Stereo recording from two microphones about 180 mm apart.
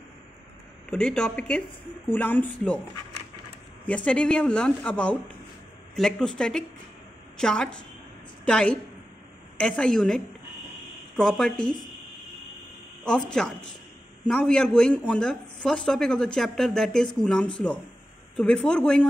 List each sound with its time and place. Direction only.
0.8 s speech: 5° left (ahead or behind)
3.8 s speech: 5° left (ahead or behind)
13.0 s speech: 5° left (ahead or behind)